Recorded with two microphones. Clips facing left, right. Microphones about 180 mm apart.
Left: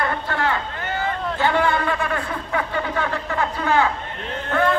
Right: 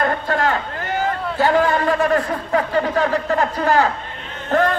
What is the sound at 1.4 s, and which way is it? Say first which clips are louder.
A man's voice: right 4 dB; 40° right (ahead or behind).